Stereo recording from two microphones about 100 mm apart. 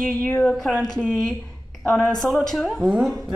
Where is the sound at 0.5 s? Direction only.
5° left (ahead or behind).